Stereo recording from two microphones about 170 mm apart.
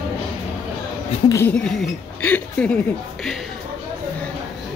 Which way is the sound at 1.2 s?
15° left (ahead or behind).